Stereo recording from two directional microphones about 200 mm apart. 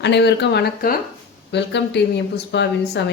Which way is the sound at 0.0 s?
60° left (ahead or behind).